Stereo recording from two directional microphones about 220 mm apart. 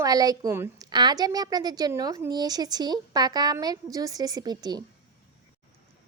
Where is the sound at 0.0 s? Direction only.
15° right (ahead or behind).